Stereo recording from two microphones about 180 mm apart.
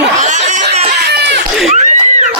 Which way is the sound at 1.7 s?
40° right (ahead or behind).